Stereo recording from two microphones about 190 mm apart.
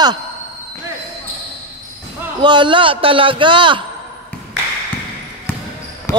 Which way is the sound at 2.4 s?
25° right (ahead or behind).